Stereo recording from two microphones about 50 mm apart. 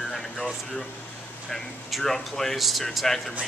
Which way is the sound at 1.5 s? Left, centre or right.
Centre.